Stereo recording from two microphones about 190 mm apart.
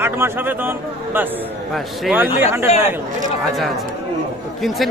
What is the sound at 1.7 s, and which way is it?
Speech, 5° right (ahead or behind).